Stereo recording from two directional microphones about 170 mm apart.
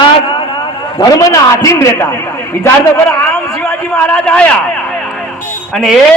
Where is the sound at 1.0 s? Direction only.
20° left (ahead or behind).